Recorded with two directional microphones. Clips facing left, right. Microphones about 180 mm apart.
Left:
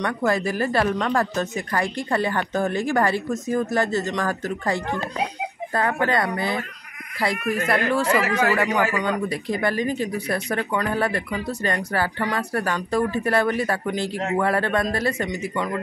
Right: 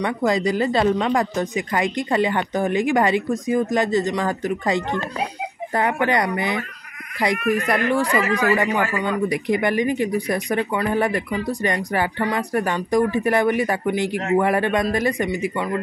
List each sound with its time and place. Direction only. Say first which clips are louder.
0.0 s speech: right 2 dB; 15° right (ahead or behind)